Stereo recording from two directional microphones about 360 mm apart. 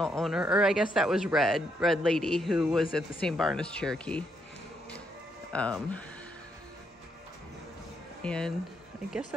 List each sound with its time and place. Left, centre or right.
0.0 s a man's voice: centre
5.5 s a man's voice: centre
8.2 s speech: centre